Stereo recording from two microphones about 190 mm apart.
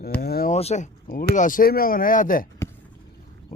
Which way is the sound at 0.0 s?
55° left (ahead or behind).